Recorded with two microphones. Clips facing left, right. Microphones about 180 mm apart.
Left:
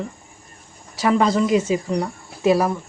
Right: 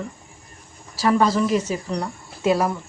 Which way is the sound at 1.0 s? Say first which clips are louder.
Left 1 dB; 20° left (ahead or behind).